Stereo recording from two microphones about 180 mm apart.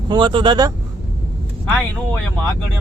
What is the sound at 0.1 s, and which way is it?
Speech, 25° right (ahead or behind).